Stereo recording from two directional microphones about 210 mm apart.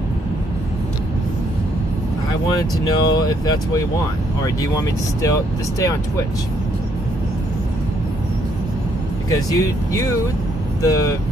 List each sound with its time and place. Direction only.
2.8 s speech: 20° left (ahead or behind)
5.2 s speech: 15° left (ahead or behind)
9.3 s speech: 15° left (ahead or behind)